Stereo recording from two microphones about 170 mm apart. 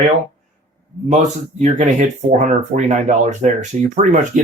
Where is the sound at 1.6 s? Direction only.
45° right (ahead or behind).